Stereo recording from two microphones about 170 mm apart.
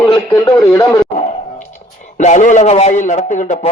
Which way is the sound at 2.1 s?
45° left (ahead or behind).